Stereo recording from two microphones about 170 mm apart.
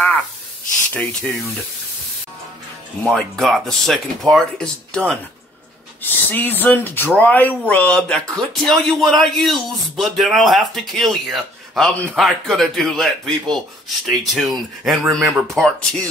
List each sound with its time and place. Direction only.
3.0 s speech: centre (ahead or behind)